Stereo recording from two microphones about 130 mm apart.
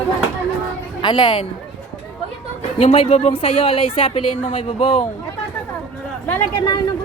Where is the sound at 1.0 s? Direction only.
35° left (ahead or behind).